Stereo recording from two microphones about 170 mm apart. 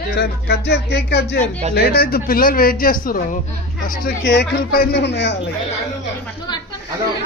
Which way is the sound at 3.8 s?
75° left (ahead or behind).